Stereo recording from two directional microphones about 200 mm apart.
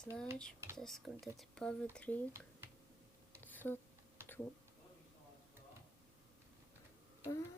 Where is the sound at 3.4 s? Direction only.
10° left (ahead or behind).